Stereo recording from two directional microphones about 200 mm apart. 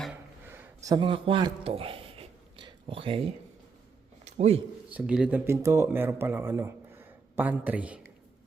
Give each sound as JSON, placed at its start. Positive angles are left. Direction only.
{"t": 0.0, "sound": "a sound", "side_deg": -10}
{"t": 4.3, "sound": "a man's voice", "side_deg": -35}
{"t": 4.9, "sound": "speech", "side_deg": -5}